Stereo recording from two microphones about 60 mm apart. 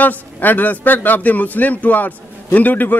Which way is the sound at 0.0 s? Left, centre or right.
Left.